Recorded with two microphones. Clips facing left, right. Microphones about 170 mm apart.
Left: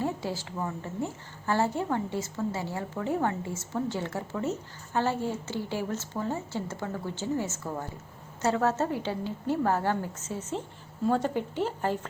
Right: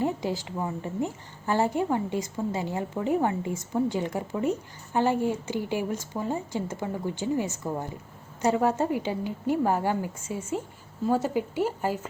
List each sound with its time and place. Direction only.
0.0 s a woman's voice: 15° right (ahead or behind)